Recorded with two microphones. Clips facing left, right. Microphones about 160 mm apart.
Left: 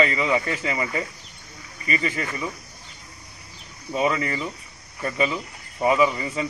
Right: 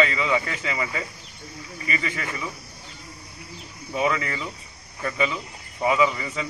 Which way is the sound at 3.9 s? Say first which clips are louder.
Left 2 dB; 30° left (ahead or behind).